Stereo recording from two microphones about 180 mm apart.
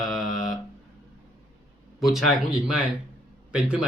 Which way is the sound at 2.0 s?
Centre (ahead or behind).